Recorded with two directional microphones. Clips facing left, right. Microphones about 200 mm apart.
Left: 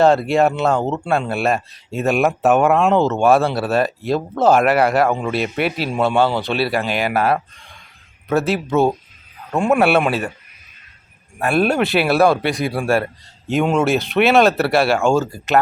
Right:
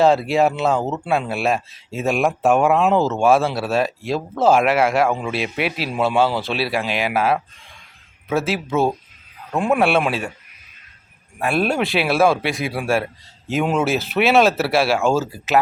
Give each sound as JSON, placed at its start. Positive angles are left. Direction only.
{"t": 0.0, "sound": "speech", "side_deg": 0}
{"t": 11.3, "sound": "speech", "side_deg": 0}